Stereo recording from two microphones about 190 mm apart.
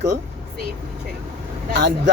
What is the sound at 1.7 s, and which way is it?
Speech, 65° right (ahead or behind).